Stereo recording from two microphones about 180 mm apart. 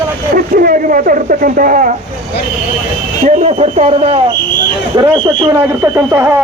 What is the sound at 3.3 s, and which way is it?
Speech, 40° right (ahead or behind).